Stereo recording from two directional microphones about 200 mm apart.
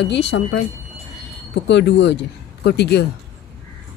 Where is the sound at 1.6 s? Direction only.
60° left (ahead or behind).